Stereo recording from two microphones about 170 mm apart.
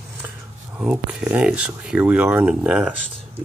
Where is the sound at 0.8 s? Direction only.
5° right (ahead or behind).